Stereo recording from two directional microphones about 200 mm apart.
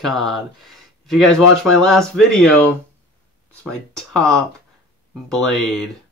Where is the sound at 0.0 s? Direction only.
Centre (ahead or behind).